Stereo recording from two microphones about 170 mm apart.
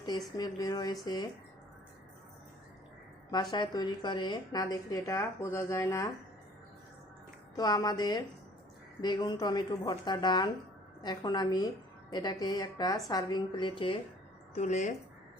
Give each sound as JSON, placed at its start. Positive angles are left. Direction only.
{"t": 0.0, "sound": "a woman's voice", "side_deg": 25}
{"t": 3.3, "sound": "a woman's voice", "side_deg": 25}
{"t": 7.5, "sound": "a woman's voice", "side_deg": 20}
{"t": 14.5, "sound": "speech", "side_deg": 40}